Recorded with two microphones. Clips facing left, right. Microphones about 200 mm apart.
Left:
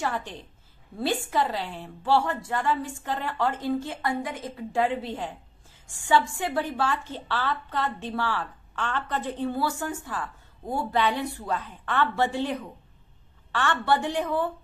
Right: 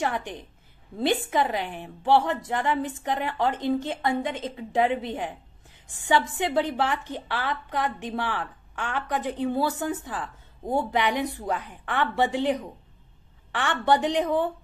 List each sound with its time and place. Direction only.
0.0 s a woman's voice: 15° right (ahead or behind)